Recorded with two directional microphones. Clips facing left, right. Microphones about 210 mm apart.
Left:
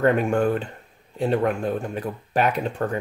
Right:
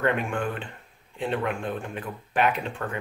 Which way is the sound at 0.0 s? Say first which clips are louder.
Left 7 dB; 40° left (ahead or behind).